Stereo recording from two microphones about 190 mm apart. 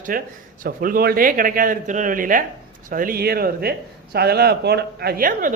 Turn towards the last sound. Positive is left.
turn(degrees=-45)  # may be behind; listen again after turning